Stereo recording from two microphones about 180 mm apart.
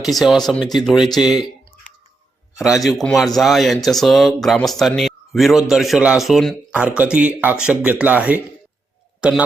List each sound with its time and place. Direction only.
0.0 s speech: centre (ahead or behind)
2.6 s speech: centre (ahead or behind)